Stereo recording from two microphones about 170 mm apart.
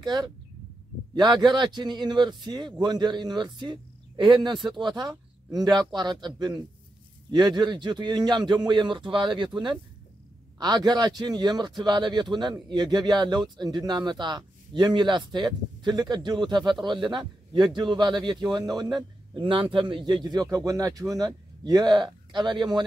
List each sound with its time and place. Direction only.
0.0 s speech: 25° right (ahead or behind)